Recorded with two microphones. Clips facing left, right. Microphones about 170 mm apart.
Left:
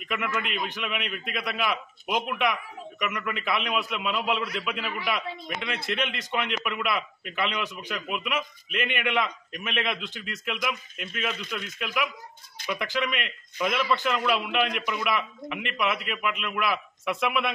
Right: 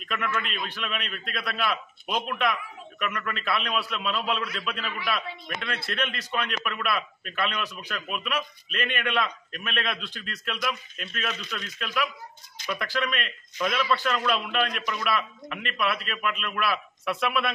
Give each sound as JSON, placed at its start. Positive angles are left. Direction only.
{"t": 0.0, "sound": "a man's voice", "side_deg": 15}